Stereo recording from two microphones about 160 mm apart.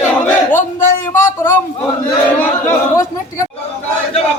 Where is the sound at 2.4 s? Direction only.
15° left (ahead or behind).